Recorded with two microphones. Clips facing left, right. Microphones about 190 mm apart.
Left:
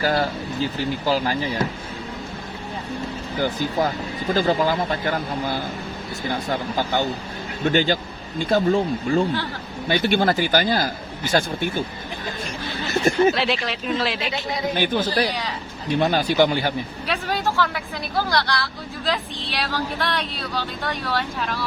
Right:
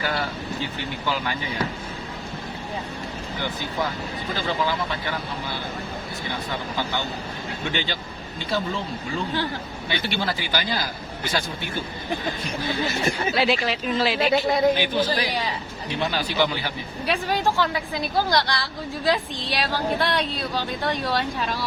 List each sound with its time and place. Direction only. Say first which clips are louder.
0.0 s vehicle: left 6 dB; 40° left (ahead or behind)
0.8 s speech: left 8 dB; 35° left (ahead or behind)
3.4 s speech: left 6 dB; 45° left (ahead or behind)
12.9 s speech: left 8 dB; 50° left (ahead or behind)
13.3 s speech: right 2 dB; centre (ahead or behind)
14.8 s speech: left 2 dB; 50° left (ahead or behind)
17.1 s speech: right 2 dB; 15° right (ahead or behind)